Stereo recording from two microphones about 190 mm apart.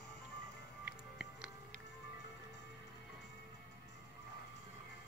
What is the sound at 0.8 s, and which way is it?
Music, 5° right (ahead or behind).